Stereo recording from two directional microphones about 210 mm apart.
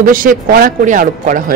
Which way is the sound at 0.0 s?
40° right (ahead or behind).